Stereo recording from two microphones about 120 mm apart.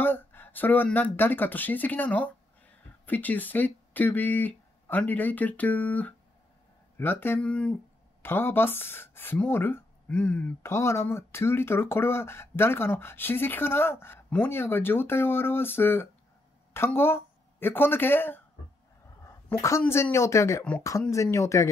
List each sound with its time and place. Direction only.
0.0 s a woman's voice: 15° left (ahead or behind)
19.5 s a woman's voice: 25° left (ahead or behind)